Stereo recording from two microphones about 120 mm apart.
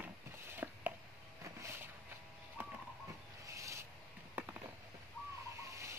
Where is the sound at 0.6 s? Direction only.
15° right (ahead or behind).